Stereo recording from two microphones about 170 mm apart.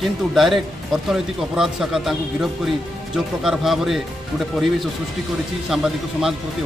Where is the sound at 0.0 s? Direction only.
Centre (ahead or behind).